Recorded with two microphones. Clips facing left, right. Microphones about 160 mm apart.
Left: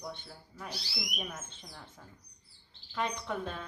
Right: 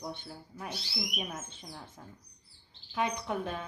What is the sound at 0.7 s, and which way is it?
Speech, 10° right (ahead or behind).